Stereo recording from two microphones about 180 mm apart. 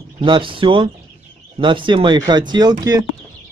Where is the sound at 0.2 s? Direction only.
30° right (ahead or behind).